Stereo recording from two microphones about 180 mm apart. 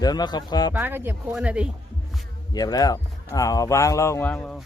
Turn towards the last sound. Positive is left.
turn(degrees=5)  # may be behind; listen again after turning